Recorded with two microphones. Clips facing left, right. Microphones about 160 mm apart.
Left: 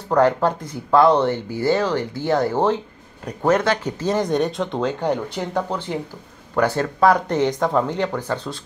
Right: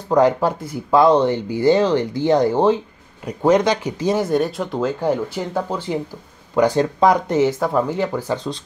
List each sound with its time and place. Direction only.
0.1 s speech: 10° right (ahead or behind)